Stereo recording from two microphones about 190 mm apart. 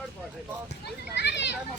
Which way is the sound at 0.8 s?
65° left (ahead or behind).